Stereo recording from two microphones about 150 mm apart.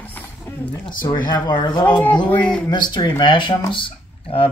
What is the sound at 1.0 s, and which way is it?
Speech, 30° left (ahead or behind).